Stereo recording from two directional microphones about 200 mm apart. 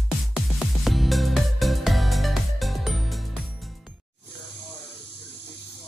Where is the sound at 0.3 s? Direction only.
Centre (ahead or behind).